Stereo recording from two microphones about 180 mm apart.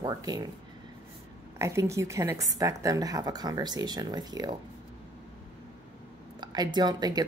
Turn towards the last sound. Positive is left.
turn(degrees=-20)  # may be behind; listen again after turning